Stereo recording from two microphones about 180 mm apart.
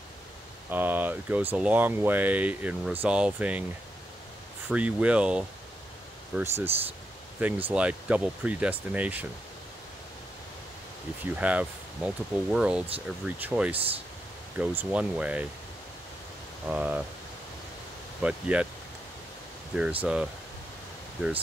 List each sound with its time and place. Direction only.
0.7 s speech: 10° right (ahead or behind)
4.6 s speech: 5° right (ahead or behind)
11.3 s speech: 5° right (ahead or behind)
16.6 s speech: 5° right (ahead or behind)
18.2 s speech: 5° right (ahead or behind)
19.7 s speech: 5° right (ahead or behind)